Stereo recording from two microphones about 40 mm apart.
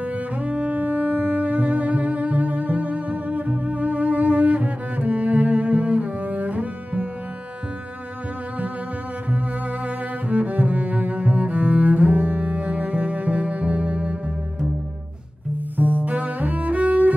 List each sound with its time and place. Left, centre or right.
0.0 s cello: right
9.8 s cello: right
15.8 s cello: right